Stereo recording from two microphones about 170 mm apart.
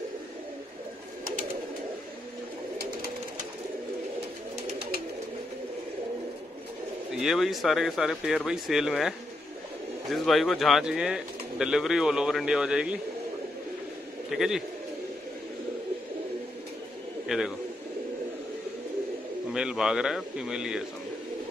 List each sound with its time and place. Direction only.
2.8 s bird: 60° right (ahead or behind)
7.1 s speech: centre (ahead or behind)
10.1 s speech: centre (ahead or behind)
14.3 s speech: centre (ahead or behind)
17.3 s speech: 5° right (ahead or behind)
19.5 s speech: 5° right (ahead or behind)